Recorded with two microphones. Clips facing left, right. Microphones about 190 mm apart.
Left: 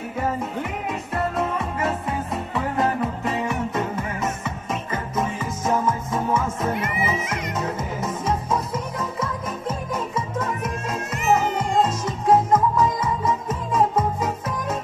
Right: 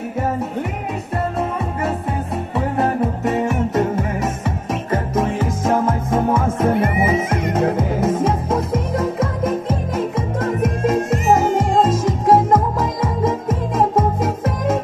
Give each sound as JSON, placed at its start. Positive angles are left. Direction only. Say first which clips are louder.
{"t": 3.7, "sound": "music", "louder": "right 7 dB", "side_deg": -65}
{"t": 5.1, "sound": "music", "louder": "right 4 dB", "side_deg": -85}
{"t": 5.8, "sound": "music", "louder": "right 5 dB", "side_deg": -50}
{"t": 12.1, "sound": "music", "louder": "right 2 dB", "side_deg": -90}